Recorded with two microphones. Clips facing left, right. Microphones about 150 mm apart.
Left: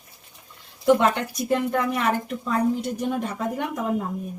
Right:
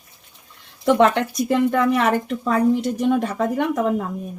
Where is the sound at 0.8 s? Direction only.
90° right.